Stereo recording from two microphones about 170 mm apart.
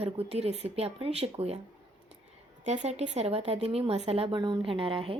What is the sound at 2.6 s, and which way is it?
Speech, 45° right (ahead or behind).